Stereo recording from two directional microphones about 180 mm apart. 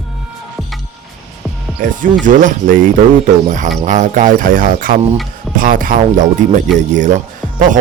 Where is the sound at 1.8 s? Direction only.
45° right (ahead or behind).